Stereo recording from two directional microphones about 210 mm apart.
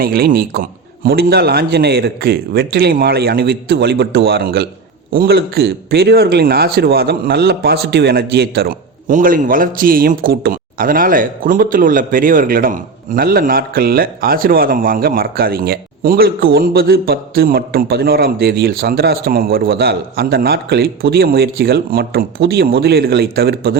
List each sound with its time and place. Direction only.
0.0 s a man's voice: 45° right (ahead or behind)